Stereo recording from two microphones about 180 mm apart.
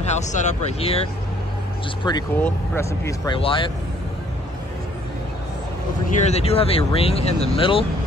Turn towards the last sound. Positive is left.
turn(degrees=30)  # may be behind; listen again after turning